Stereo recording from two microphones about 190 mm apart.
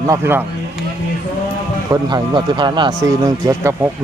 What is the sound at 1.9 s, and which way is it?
Speech, 20° right (ahead or behind).